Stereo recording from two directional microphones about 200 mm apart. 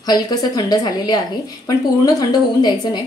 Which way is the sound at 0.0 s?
20° left (ahead or behind).